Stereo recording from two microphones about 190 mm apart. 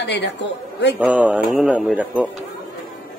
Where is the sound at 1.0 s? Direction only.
5° right (ahead or behind).